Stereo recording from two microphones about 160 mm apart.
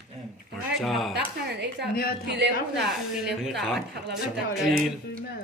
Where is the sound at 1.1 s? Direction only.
90° right.